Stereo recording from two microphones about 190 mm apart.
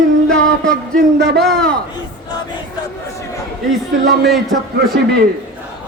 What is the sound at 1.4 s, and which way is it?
Music, centre (ahead or behind).